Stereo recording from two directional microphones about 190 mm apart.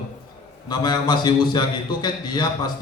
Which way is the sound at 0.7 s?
20° left (ahead or behind).